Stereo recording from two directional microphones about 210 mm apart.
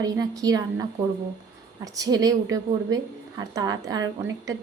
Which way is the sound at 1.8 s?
15° right (ahead or behind).